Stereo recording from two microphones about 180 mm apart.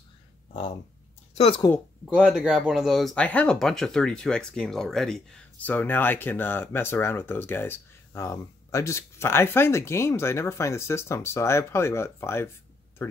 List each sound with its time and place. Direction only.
1.3 s speech: 35° left (ahead or behind)
2.0 s speech: 5° right (ahead or behind); by 13.2 s 10° left (ahead or behind)